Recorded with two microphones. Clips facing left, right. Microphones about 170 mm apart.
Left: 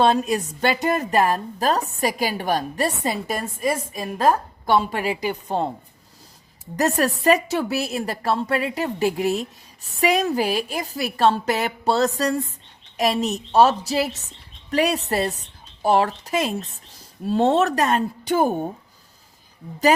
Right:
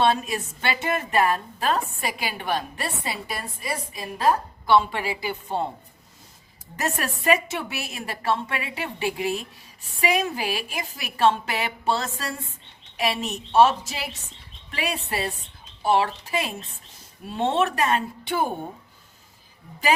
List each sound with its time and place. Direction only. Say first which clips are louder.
0.0 s a woman's voice: left 4 dB; 40° left (ahead or behind)
6.7 s a woman's voice: left 8 dB; 35° left (ahead or behind)